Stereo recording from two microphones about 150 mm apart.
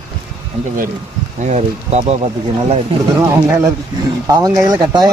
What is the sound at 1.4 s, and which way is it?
Speech, 50° right (ahead or behind).